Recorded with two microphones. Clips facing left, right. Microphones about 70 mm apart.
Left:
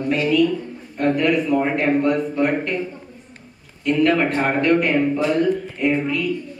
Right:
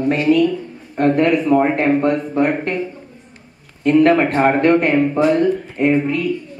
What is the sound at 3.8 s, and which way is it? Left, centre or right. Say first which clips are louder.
A man's voice: right 5 dB; right.